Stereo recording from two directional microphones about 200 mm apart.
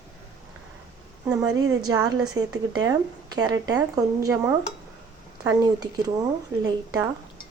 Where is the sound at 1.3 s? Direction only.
20° right (ahead or behind).